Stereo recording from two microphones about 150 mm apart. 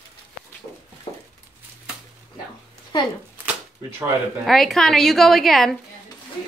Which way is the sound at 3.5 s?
15° right (ahead or behind).